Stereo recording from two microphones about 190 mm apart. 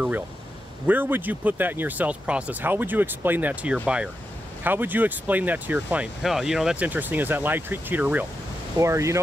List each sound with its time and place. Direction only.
0.8 s speech: 10° right (ahead or behind)